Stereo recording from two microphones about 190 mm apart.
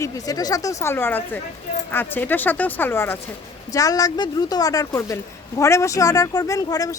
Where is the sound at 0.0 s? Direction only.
20° left (ahead or behind).